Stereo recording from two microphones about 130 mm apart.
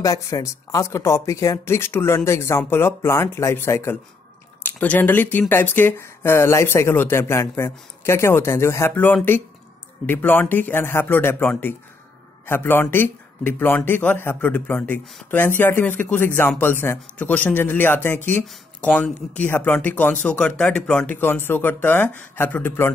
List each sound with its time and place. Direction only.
0.0 s speech: 25° left (ahead or behind); by 21.2 s 5° left (ahead or behind)
21.2 s speech: 15° left (ahead or behind)